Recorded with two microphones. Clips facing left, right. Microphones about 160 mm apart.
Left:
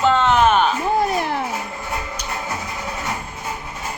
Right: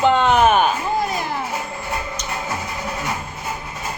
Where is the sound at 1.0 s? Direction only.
65° left (ahead or behind).